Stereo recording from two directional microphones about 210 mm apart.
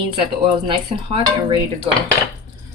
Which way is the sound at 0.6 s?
25° right (ahead or behind).